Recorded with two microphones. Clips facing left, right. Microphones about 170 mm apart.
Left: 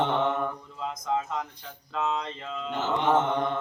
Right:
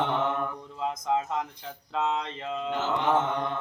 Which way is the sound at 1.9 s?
20° right (ahead or behind).